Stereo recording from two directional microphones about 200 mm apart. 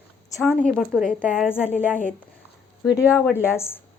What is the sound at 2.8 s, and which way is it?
Speech, 15° left (ahead or behind).